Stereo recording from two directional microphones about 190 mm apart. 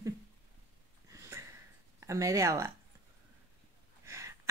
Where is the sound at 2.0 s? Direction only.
15° right (ahead or behind).